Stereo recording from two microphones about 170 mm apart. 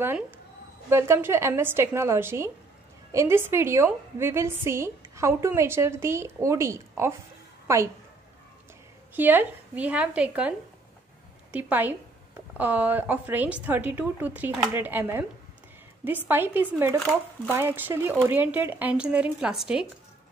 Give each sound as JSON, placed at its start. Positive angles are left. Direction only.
{"t": 0.8, "sound": "a woman's voice", "side_deg": -15}
{"t": 9.1, "sound": "a woman's voice", "side_deg": -10}
{"t": 11.5, "sound": "a woman's voice", "side_deg": -10}